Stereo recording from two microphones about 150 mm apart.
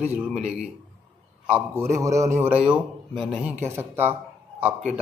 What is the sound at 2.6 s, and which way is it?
Speech, 5° right (ahead or behind).